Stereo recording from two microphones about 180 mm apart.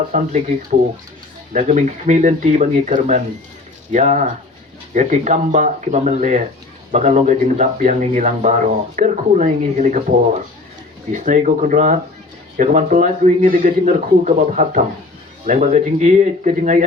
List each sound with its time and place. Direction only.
0.1 s speech: 45° right (ahead or behind)
1.5 s speech: 40° right (ahead or behind)
11.1 s speech: 45° right (ahead or behind)